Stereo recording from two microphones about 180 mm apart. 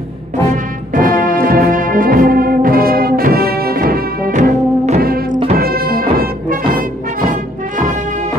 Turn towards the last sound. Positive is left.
turn(degrees=-55)  # may be behind; listen again after turning